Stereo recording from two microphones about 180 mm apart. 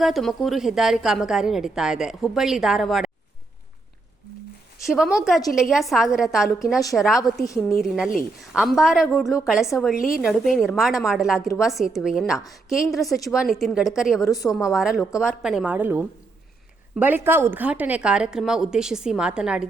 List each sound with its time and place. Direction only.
0.0 s a woman's voice: centre (ahead or behind)
4.9 s a woman's voice: centre (ahead or behind)
11.3 s a woman's voice: 15° left (ahead or behind)
11.6 s a woman's voice: centre (ahead or behind)
14.2 s a woman's voice: 20° left (ahead or behind)
14.5 s a woman's voice: centre (ahead or behind)